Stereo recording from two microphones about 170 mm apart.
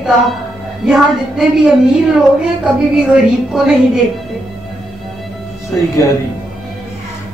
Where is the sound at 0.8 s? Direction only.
5° right (ahead or behind).